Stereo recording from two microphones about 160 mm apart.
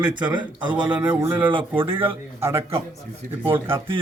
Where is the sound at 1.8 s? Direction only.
35° right (ahead or behind).